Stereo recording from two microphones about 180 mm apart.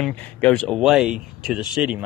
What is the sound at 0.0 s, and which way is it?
Speech, 10° left (ahead or behind).